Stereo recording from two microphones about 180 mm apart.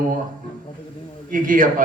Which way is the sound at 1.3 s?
50° right (ahead or behind).